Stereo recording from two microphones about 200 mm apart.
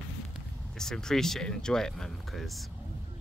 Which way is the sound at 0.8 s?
5° left (ahead or behind).